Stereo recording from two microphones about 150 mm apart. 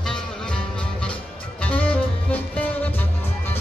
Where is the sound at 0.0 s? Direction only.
5° left (ahead or behind).